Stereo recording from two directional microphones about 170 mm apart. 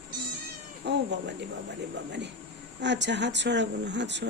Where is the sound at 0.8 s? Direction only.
85° right.